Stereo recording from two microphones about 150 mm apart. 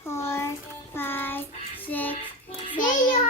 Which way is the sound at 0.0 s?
15° left (ahead or behind).